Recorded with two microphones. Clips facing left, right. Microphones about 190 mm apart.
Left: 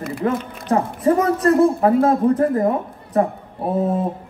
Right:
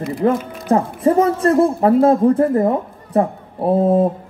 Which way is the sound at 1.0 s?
25° right (ahead or behind).